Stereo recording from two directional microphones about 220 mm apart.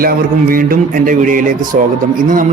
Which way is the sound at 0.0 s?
40° right (ahead or behind).